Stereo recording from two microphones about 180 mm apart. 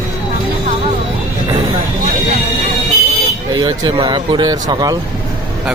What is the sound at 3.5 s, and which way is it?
Speech, 20° right (ahead or behind).